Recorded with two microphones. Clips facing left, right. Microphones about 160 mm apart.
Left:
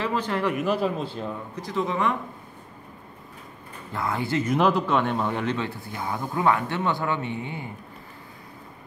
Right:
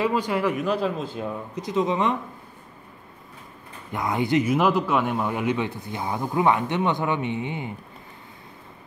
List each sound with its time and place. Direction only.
0.0 s speech: 10° right (ahead or behind)
1.1 s a man's voice: 10° right (ahead or behind)
1.6 s speech: 20° right (ahead or behind)
3.9 s a man's voice: 20° right (ahead or behind)
4.5 s a man's voice: 5° right (ahead or behind); by 7.7 s 20° right (ahead or behind)